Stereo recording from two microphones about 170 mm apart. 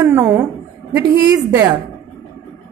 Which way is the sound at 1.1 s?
20° right (ahead or behind).